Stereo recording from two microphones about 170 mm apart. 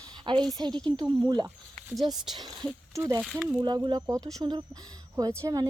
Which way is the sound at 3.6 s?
25° right (ahead or behind).